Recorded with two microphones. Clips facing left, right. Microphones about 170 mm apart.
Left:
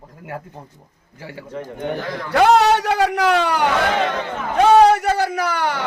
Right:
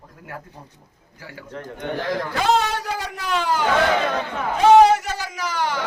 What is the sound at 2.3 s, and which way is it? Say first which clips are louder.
A man's voice: left 9 dB; 65° left (ahead or behind).